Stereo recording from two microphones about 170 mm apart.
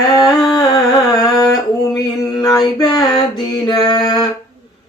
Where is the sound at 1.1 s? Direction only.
20° left (ahead or behind).